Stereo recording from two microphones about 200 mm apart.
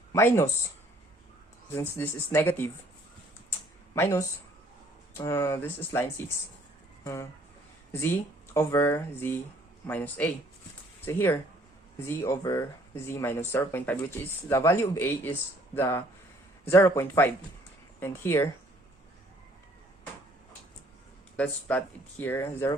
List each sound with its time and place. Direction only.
0.1 s speech: 10° left (ahead or behind)
1.7 s speech: 10° left (ahead or behind)
3.9 s speech: 10° left (ahead or behind)
8.5 s speech: 15° left (ahead or behind)
21.3 s speech: 5° left (ahead or behind)